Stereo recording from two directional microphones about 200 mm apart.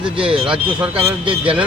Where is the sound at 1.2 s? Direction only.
25° right (ahead or behind).